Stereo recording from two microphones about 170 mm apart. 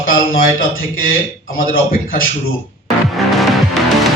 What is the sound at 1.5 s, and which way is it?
Speech, 55° left (ahead or behind).